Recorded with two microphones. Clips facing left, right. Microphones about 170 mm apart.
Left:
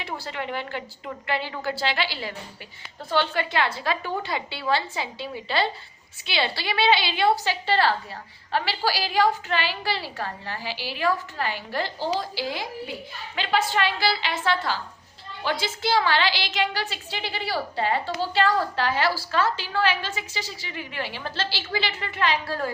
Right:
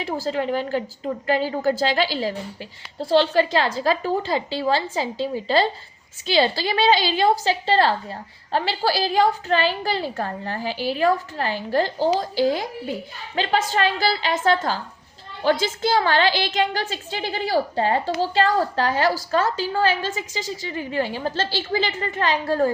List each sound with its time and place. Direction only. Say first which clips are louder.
0.0 s a woman's voice: right 8 dB; 40° right (ahead or behind)